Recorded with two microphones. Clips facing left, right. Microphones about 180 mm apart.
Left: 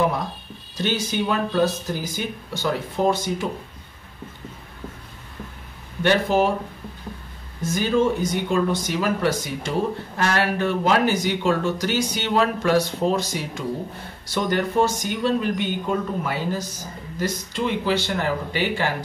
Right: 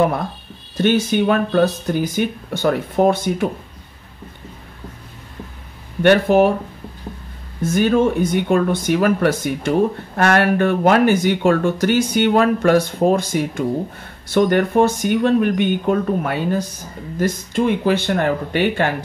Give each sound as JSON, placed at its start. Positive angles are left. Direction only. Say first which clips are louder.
{"t": 0.7, "sound": "speech", "louder": "right 8 dB", "side_deg": -55}
{"t": 6.0, "sound": "speech", "louder": "right 6 dB", "side_deg": -60}
{"t": 7.7, "sound": "speech", "louder": "right 5 dB", "side_deg": -55}